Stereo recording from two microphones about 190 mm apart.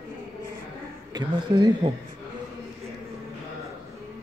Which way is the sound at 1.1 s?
20° right (ahead or behind).